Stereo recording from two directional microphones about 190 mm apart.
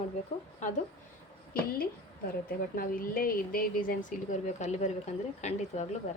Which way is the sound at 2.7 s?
50° left (ahead or behind).